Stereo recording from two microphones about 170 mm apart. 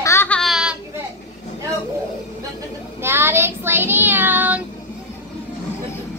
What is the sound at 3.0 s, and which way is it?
Child singing, 15° right (ahead or behind).